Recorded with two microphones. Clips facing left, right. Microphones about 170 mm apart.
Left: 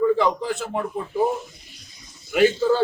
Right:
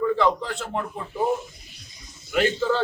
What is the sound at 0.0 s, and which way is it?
Speech, 10° left (ahead or behind).